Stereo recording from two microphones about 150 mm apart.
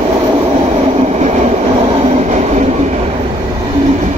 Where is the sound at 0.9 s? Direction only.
50° right (ahead or behind).